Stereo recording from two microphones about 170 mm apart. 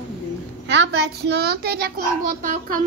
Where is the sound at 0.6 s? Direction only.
90° right.